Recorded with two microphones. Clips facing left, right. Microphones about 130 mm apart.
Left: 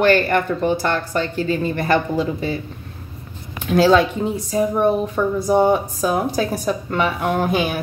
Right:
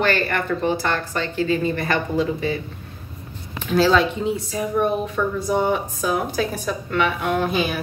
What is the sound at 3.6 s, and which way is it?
Speech, 50° left (ahead or behind).